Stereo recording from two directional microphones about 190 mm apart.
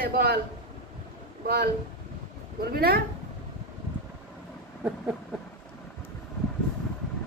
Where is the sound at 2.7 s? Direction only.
55° right (ahead or behind).